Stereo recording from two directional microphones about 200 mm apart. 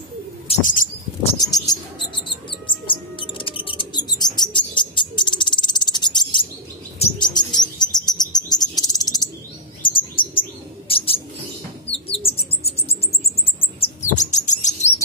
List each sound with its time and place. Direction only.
0.5 s bird: 40° left (ahead or behind)
1.4 s a sound: 20° left (ahead or behind)
2.9 s bird: 25° left (ahead or behind)
7.0 s chirp: 20° left (ahead or behind)
9.8 s bird: 25° left (ahead or behind)
13.8 s chirp: 35° left (ahead or behind)